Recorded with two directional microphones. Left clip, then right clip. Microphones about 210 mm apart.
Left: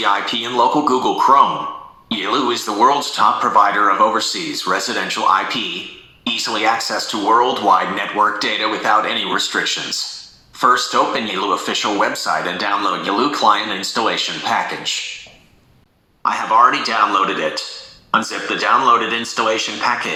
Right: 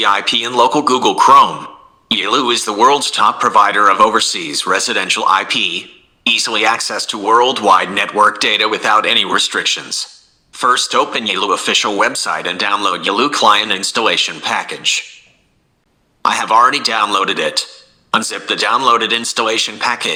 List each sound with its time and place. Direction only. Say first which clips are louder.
0.0 s speech: right 4 dB; 35° right (ahead or behind)
16.2 s speech: right 2 dB; 40° right (ahead or behind)